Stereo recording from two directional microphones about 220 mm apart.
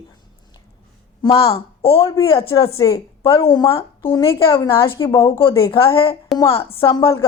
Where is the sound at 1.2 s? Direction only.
25° left (ahead or behind).